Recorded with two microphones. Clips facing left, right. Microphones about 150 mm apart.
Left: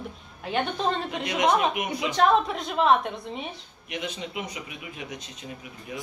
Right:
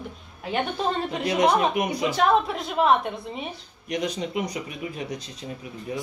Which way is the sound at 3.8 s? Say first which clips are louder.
Right 6 dB; 40° right (ahead or behind).